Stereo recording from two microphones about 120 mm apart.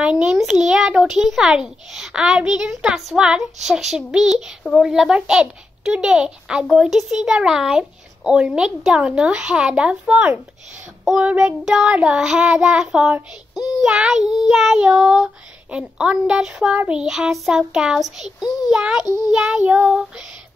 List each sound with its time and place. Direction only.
0.0 s child singing: 10° right (ahead or behind)
3.6 s a child's voice: 5° right (ahead or behind)
14.2 s child singing: 35° left (ahead or behind)
14.5 s child singing: 5° right (ahead or behind)
19.0 s child singing: 35° left (ahead or behind)
19.3 s a child's voice: 5° right (ahead or behind)